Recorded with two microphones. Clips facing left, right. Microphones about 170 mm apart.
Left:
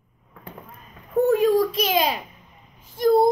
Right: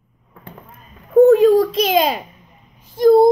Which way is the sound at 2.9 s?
35° right (ahead or behind).